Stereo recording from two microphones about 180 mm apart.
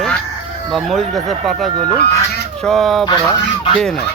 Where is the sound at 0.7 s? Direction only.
Centre (ahead or behind).